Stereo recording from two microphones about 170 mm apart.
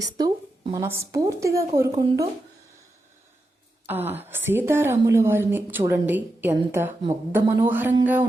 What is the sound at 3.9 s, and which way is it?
A woman's voice, 10° right (ahead or behind).